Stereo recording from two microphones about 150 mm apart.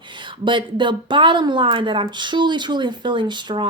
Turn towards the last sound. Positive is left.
turn(degrees=-30)  # may be behind; listen again after turning